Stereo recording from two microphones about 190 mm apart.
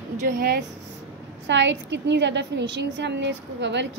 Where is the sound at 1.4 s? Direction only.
70° right (ahead or behind).